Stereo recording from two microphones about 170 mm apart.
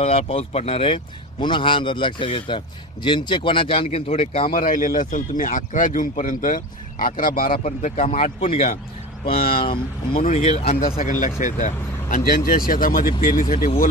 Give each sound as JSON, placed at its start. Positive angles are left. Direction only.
{"t": 0.0, "sound": "a man's voice", "side_deg": 35}
{"t": 4.5, "sound": "speech", "side_deg": 55}
{"t": 7.6, "sound": "a man's voice", "side_deg": 40}
{"t": 10.8, "sound": "speech", "side_deg": 55}